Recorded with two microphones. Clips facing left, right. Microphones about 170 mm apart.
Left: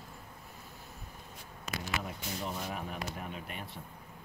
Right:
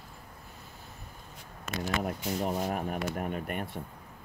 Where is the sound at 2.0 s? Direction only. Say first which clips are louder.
Right 8 dB; 50° right (ahead or behind).